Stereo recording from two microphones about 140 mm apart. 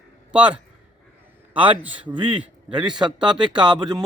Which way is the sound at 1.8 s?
10° right (ahead or behind).